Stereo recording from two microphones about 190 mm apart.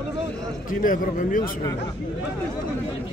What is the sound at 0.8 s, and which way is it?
Speech, 45° left (ahead or behind).